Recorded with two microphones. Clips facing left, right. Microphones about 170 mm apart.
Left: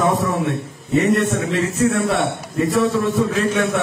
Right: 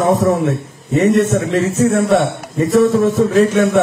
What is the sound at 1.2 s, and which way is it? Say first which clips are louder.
A man's voice: right 5 dB; 45° right (ahead or behind).